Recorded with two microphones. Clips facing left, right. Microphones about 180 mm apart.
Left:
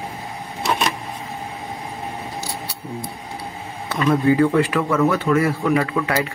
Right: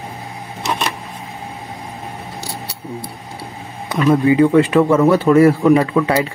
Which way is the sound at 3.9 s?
15° right (ahead or behind).